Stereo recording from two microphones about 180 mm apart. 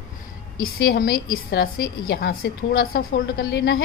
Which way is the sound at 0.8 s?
55° left (ahead or behind).